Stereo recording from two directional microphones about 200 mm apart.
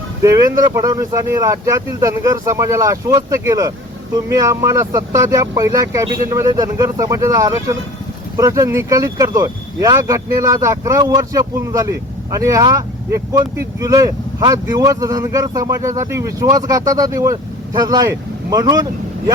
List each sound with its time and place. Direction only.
0.2 s speech: 15° right (ahead or behind)